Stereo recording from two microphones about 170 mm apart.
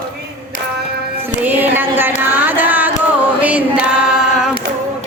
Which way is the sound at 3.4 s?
10° right (ahead or behind).